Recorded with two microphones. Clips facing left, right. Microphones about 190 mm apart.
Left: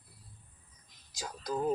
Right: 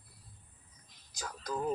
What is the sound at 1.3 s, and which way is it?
Speech, 20° left (ahead or behind).